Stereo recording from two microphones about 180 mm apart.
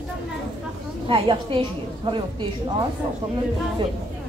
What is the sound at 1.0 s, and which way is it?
A woman's voice, 30° right (ahead or behind).